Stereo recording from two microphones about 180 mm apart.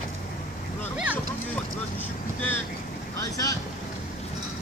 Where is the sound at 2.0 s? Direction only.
10° left (ahead or behind).